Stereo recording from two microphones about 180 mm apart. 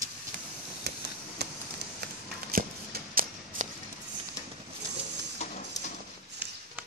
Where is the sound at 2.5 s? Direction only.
55° right (ahead or behind).